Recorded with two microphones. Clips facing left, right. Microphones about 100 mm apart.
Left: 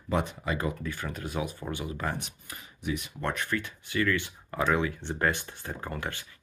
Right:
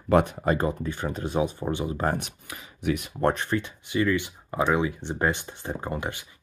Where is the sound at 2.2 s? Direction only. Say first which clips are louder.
Right 4 dB; 80° right; by 3.1 s 60° right (ahead or behind).